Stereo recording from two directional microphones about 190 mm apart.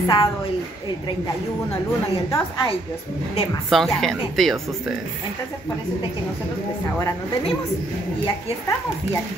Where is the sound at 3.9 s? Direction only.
Centre (ahead or behind).